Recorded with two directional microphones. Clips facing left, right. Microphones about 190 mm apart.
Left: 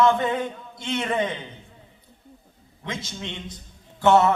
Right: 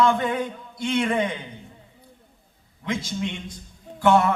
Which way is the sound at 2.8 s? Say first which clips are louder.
Right 6 dB; 25° left (ahead or behind).